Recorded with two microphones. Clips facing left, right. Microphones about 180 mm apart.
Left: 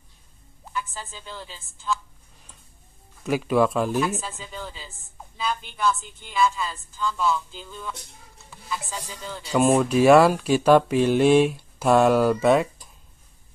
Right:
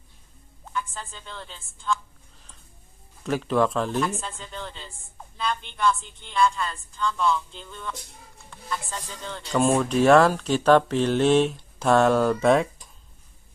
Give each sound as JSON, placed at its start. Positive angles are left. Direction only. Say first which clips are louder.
{"t": 0.7, "sound": "speech", "louder": "even", "side_deg": 5}
{"t": 3.3, "sound": "speech", "louder": "left 2 dB", "side_deg": 10}